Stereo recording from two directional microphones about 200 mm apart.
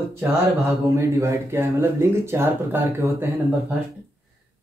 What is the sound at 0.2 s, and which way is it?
Speech, 15° right (ahead or behind).